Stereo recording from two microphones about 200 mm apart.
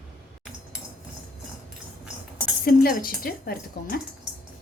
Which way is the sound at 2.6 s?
45° left (ahead or behind).